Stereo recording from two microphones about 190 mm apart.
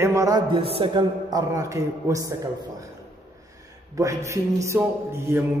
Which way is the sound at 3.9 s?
15° right (ahead or behind).